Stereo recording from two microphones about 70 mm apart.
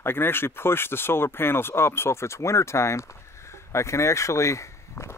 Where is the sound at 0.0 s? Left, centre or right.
Left.